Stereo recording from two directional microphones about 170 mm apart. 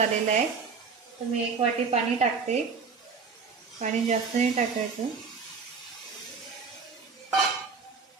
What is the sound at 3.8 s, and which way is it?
Speech, 45° right (ahead or behind).